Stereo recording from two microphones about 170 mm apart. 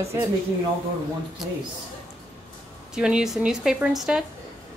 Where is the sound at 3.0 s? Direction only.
5° right (ahead or behind).